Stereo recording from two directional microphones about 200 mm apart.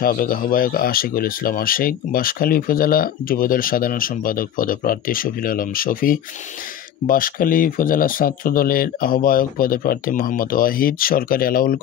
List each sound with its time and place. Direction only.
0.0 s speech: 45° left (ahead or behind)